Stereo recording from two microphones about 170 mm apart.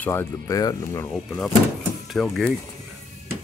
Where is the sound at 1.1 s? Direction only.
Centre (ahead or behind).